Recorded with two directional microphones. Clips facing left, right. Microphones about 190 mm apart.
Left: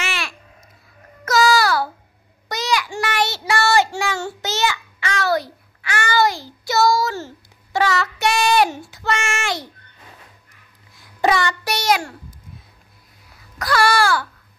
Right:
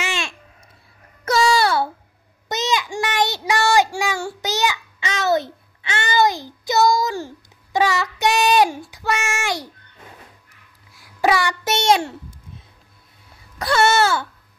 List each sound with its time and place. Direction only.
0.0 s babbling: 20° right (ahead or behind)
1.2 s a sound: 30° right (ahead or behind)
2.4 s child singing: 20° right (ahead or behind)
11.0 s a sound: 5° right (ahead or behind)
11.6 s child singing: 25° right (ahead or behind)
13.6 s baby cry: 25° right (ahead or behind)